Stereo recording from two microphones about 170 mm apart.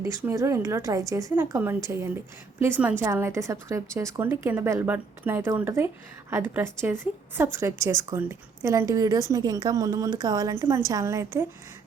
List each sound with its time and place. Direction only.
0.0 s a woman's voice: 15° right (ahead or behind)